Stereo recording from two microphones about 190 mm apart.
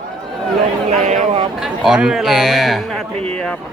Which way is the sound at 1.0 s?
35° right (ahead or behind).